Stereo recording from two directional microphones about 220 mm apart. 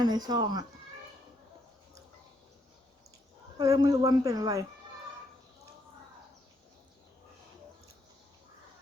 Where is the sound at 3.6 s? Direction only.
15° right (ahead or behind).